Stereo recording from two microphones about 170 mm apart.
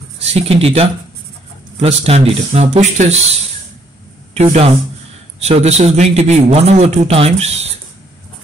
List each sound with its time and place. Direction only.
0.3 s a man's voice: 35° right (ahead or behind)
4.3 s a man's voice: 40° right (ahead or behind)